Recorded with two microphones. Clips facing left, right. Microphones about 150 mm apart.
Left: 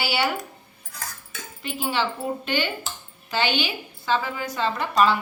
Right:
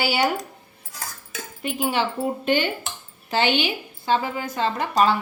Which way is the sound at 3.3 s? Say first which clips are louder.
Right 3 dB; 20° right (ahead or behind).